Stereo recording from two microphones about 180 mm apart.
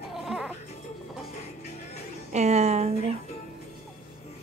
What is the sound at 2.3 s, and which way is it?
Speech, 40° right (ahead or behind).